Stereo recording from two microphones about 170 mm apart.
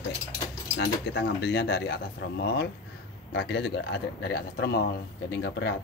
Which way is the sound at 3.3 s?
85° left.